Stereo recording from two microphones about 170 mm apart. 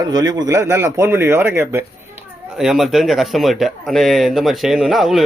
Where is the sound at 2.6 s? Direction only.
Centre (ahead or behind).